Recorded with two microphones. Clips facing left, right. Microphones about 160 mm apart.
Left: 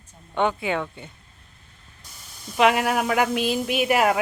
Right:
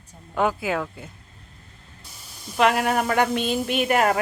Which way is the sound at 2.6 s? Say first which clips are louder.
Even; centre (ahead or behind).